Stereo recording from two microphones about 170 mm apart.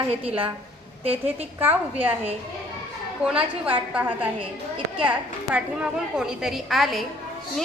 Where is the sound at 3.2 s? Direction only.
5° right (ahead or behind).